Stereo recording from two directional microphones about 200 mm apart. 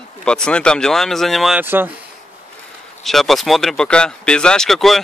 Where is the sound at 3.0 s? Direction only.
Centre (ahead or behind).